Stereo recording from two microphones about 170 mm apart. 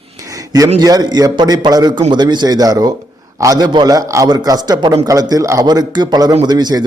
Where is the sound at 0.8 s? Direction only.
25° right (ahead or behind).